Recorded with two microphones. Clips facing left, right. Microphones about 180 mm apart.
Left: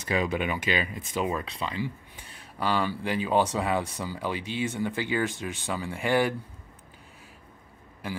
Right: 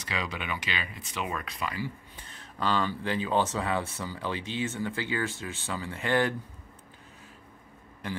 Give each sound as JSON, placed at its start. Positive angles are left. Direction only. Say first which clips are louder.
{"t": 0.1, "sound": "speech", "louder": "left 7 dB", "side_deg": 50}
{"t": 1.3, "sound": "speech", "louder": "left 3 dB", "side_deg": 30}
{"t": 2.2, "sound": "speech", "louder": "left 1 dB", "side_deg": 10}